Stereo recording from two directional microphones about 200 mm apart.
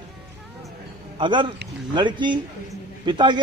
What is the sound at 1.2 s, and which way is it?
Speech, 25° right (ahead or behind).